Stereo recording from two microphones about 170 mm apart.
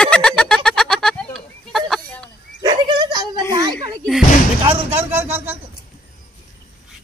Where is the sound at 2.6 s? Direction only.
25° right (ahead or behind).